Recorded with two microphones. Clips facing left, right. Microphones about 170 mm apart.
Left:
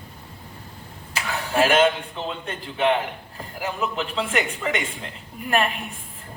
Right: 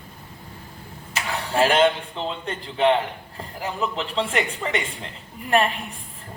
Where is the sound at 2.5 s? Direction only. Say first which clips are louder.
Right 2 dB; 30° right (ahead or behind).